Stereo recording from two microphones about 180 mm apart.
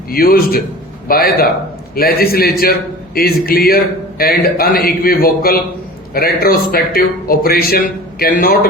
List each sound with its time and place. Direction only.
0.1 s speech: 55° left (ahead or behind)